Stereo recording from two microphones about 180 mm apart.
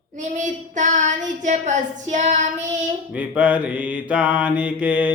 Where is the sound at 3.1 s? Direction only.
10° right (ahead or behind).